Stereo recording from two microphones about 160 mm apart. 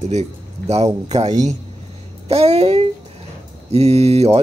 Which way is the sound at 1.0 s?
45° right (ahead or behind).